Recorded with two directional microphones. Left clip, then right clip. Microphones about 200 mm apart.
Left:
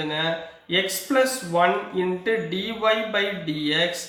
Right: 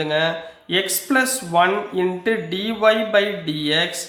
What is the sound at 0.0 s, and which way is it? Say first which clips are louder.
Speech: right 5 dB; 50° right (ahead or behind).